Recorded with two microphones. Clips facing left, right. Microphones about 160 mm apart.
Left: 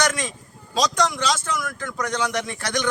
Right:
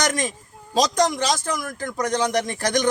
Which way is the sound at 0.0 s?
40° right (ahead or behind).